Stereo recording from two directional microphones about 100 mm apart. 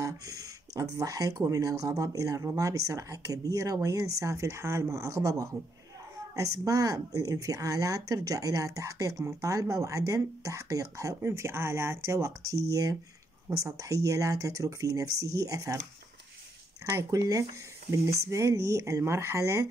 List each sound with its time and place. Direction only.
0.0 s speech: 35° right (ahead or behind)
16.9 s speech: 35° right (ahead or behind)